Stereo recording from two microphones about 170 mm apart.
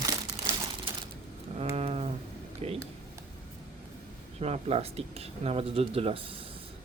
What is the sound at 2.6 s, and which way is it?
Speech, 35° right (ahead or behind).